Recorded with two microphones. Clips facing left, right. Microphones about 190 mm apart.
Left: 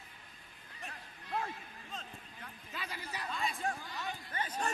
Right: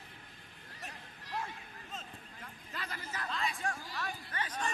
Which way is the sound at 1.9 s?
Centre (ahead or behind).